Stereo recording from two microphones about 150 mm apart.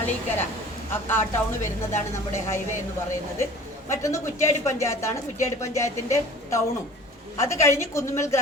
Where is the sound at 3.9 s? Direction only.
20° left (ahead or behind).